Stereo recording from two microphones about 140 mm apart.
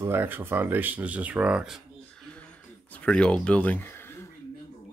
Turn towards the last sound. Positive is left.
turn(degrees=15)  # may be behind; listen again after turning